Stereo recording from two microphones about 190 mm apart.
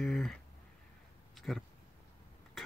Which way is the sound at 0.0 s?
Centre (ahead or behind).